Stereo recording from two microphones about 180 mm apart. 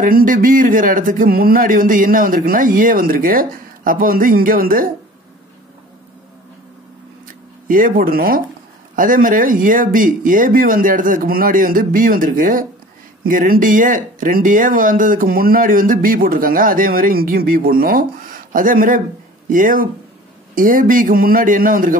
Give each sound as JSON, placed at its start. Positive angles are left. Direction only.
{"t": 0.0, "sound": "speech", "side_deg": -50}
{"t": 7.6, "sound": "speech", "side_deg": -50}